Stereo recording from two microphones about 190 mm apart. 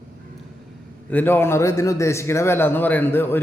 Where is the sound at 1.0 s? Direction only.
10° left (ahead or behind).